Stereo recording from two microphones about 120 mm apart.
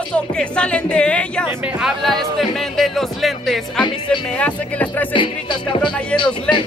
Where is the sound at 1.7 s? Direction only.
Centre (ahead or behind).